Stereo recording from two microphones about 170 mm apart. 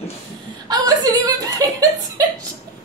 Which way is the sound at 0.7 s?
20° right (ahead or behind).